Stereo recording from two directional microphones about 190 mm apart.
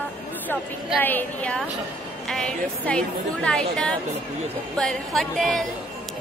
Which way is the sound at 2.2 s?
5° left (ahead or behind).